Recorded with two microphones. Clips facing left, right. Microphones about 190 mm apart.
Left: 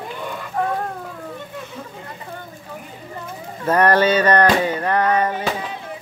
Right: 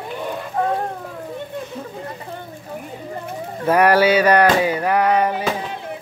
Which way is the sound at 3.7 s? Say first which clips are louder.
Right 1 dB; 10° right (ahead or behind).